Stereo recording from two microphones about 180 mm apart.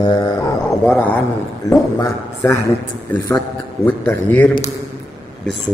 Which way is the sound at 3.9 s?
10° left (ahead or behind).